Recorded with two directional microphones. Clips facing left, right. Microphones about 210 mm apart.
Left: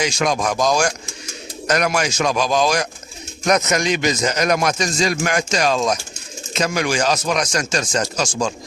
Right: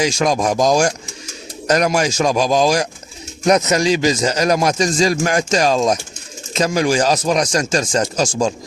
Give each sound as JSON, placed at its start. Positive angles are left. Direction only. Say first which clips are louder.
{"t": 0.0, "sound": "speech", "louder": "right 3 dB", "side_deg": -35}